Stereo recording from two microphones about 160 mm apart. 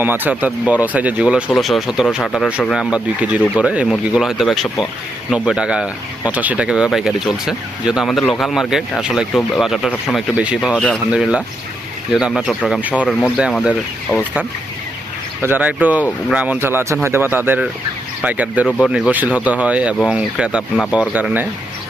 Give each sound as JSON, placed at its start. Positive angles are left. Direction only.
{"t": 0.0, "sound": "speech", "side_deg": -10}
{"t": 10.8, "sound": "speech", "side_deg": 5}
{"t": 11.1, "sound": "speech", "side_deg": -5}
{"t": 15.4, "sound": "speech", "side_deg": -10}